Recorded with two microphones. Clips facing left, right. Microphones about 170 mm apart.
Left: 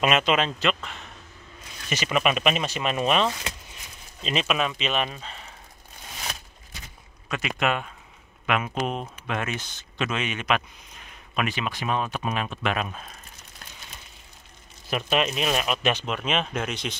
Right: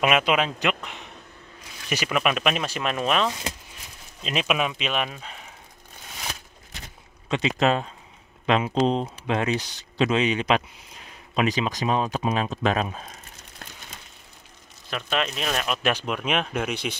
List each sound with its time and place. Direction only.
0.0 s speech: 10° right (ahead or behind)
2.0 s speech: centre (ahead or behind)
7.2 s speech: 25° right (ahead or behind)
11.4 s speech: 40° right (ahead or behind)
14.9 s speech: 15° left (ahead or behind)
15.9 s speech: 10° right (ahead or behind)